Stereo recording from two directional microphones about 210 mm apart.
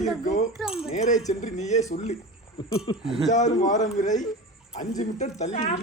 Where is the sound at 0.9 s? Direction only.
35° left (ahead or behind).